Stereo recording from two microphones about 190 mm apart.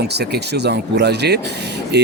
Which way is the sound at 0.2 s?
60° right (ahead or behind).